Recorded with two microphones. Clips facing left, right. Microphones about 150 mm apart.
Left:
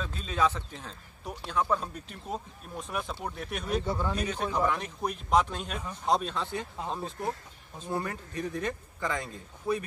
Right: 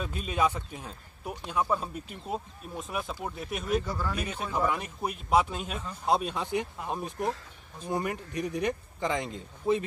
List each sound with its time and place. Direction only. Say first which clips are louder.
0.0 s speech: right 1 dB; 10° right (ahead or behind)
3.8 s speech: left 2 dB; 25° left (ahead or behind)
4.2 s speech: right 1 dB; 5° right (ahead or behind)